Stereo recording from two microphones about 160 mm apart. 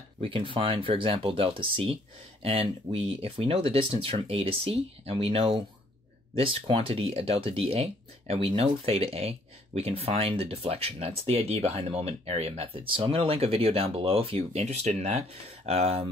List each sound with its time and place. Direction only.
0.2 s speech: 35° right (ahead or behind)